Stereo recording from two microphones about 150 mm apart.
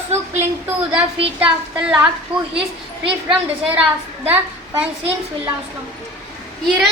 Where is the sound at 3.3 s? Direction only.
10° right (ahead or behind).